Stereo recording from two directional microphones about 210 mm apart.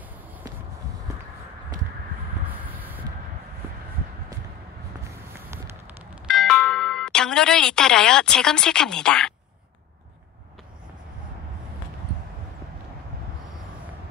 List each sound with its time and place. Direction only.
2.6 s vehicle: 10° right (ahead or behind)
6.2 s speech: centre (ahead or behind)